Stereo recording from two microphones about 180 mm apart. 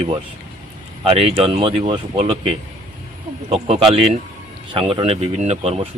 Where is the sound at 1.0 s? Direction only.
30° right (ahead or behind).